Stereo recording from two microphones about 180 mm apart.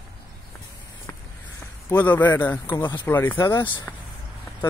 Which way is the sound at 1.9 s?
10° left (ahead or behind).